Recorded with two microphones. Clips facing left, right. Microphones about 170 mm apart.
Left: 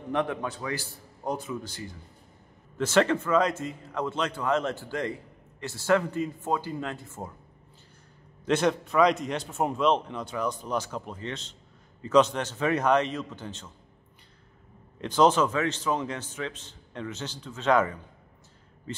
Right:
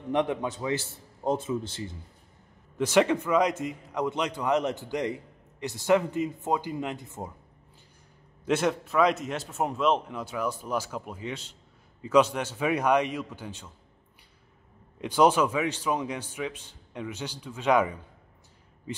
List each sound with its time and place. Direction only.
0.1 s a man's voice: 20° right (ahead or behind)
2.8 s a man's voice: 15° right (ahead or behind)
8.5 s a man's voice: 5° right (ahead or behind)
15.0 s a man's voice: 10° right (ahead or behind)